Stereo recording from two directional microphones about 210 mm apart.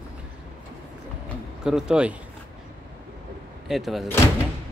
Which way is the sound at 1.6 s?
5° right (ahead or behind).